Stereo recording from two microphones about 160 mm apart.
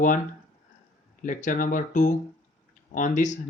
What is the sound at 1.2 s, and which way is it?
Speech, 50° left (ahead or behind).